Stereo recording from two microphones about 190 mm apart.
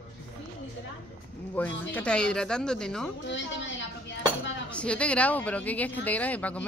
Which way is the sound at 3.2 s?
70° left (ahead or behind).